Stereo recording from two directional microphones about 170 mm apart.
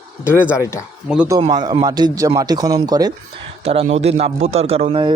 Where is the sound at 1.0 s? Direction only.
5° right (ahead or behind).